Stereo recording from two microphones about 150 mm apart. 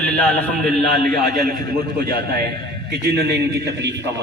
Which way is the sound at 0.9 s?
75° right (ahead or behind).